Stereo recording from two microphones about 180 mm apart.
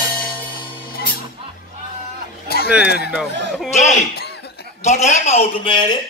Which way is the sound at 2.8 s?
65° left (ahead or behind).